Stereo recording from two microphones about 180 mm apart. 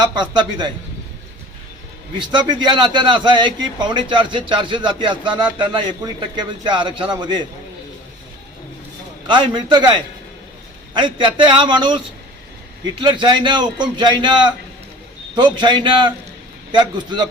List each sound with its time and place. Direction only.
0.0 s a man's voice: 25° right (ahead or behind)
2.1 s a man's voice: 25° right (ahead or behind)
9.2 s a man's voice: 25° right (ahead or behind)
13.0 s a man's voice: 25° right (ahead or behind)
15.5 s a man's voice: 25° right (ahead or behind)